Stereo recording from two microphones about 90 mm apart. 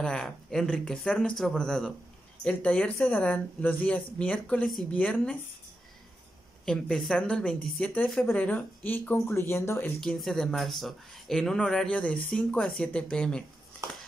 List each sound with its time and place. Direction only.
0.0 s speech: 5° left (ahead or behind)
6.6 s speech: 10° left (ahead or behind); by 9.9 s 25° left (ahead or behind)
9.9 s speech: centre (ahead or behind)